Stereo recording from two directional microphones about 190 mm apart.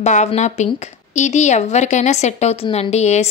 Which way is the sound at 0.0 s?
35° left (ahead or behind).